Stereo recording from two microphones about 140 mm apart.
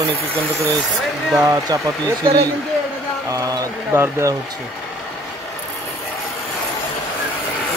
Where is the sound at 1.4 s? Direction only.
25° right (ahead or behind).